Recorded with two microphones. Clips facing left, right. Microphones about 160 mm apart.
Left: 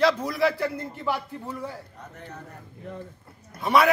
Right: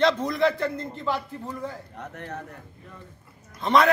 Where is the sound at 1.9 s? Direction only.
75° right (ahead or behind).